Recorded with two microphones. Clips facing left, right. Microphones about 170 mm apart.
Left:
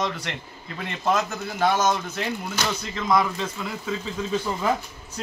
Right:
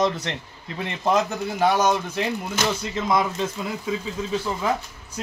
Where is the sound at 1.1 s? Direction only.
15° right (ahead or behind).